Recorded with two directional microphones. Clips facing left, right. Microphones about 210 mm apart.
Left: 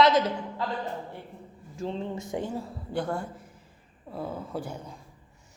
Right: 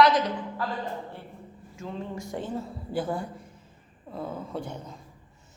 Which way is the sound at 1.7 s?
30° left (ahead or behind).